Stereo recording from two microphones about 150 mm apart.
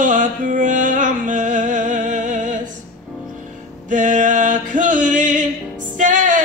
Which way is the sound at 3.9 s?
60° right (ahead or behind).